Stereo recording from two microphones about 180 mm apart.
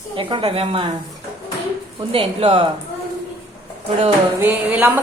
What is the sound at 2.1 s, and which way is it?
Speech, 30° right (ahead or behind).